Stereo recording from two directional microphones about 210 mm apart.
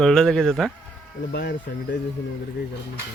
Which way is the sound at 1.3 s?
50° left (ahead or behind).